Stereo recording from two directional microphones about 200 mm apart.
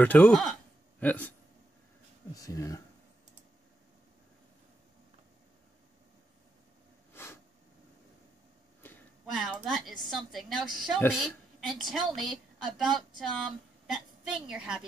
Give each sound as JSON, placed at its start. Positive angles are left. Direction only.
{"t": 0.0, "sound": "speech", "side_deg": 5}
{"t": 2.3, "sound": "speech", "side_deg": 15}
{"t": 9.2, "sound": "a woman's voice", "side_deg": 0}